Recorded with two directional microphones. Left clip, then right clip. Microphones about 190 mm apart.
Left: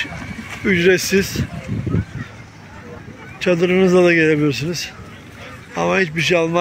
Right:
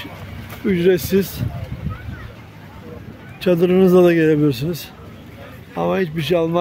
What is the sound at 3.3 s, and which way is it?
Speech, 25° right (ahead or behind).